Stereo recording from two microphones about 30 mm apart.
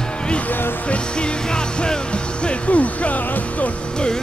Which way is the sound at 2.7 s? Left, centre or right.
Left.